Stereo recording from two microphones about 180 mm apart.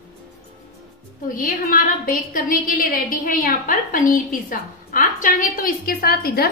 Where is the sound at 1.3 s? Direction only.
50° left (ahead or behind).